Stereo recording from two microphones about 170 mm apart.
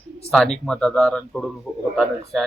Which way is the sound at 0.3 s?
5° left (ahead or behind).